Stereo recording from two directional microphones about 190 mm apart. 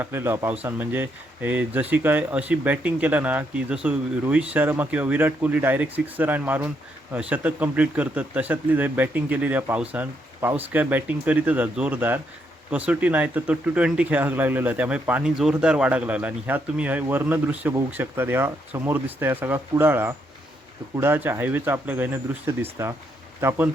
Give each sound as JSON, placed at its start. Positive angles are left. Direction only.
{"t": 0.0, "sound": "speech", "side_deg": -10}